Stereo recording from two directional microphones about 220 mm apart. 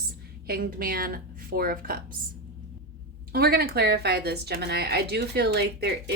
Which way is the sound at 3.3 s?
45° right (ahead or behind).